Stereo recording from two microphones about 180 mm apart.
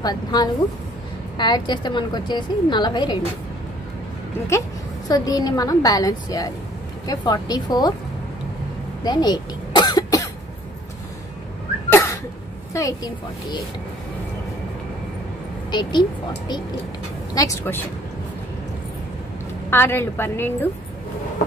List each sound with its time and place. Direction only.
0.0 s a woman's voice: 25° left (ahead or behind)
4.5 s a woman's voice: 20° left (ahead or behind)
9.0 s cough: 25° left (ahead or behind)
11.9 s a sound: 15° left (ahead or behind)
12.7 s a woman's voice: 20° left (ahead or behind)
15.7 s a woman's voice: 25° left (ahead or behind)
19.7 s a woman's voice: 10° left (ahead or behind)